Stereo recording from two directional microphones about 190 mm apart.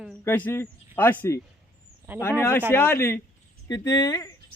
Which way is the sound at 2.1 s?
10° right (ahead or behind).